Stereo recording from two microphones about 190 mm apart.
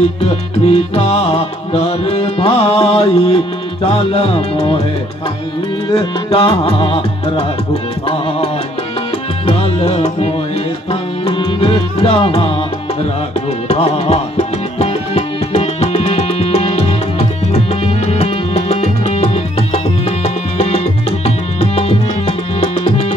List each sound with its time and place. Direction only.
0.2 s music: 30° left (ahead or behind)
5.9 s music: 25° left (ahead or behind)
9.5 s music: 30° left (ahead or behind)
13.7 s music: 30° left (ahead or behind)